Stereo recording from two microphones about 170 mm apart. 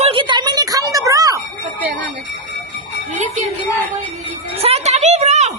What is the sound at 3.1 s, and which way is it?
Music, 40° right (ahead or behind).